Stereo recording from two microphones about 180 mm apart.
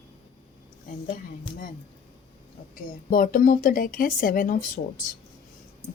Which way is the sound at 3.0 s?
50° left (ahead or behind).